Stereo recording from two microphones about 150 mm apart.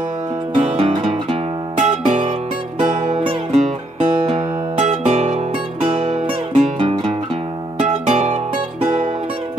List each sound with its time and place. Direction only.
0.6 s music: 45° right (ahead or behind)
1.9 s music: 50° right (ahead or behind)
2.8 s music: 35° right (ahead or behind); by 5.4 s 50° right (ahead or behind)
5.8 s music: 35° right (ahead or behind)
6.8 s music: 35° right (ahead or behind)
8.1 s music: 50° right (ahead or behind)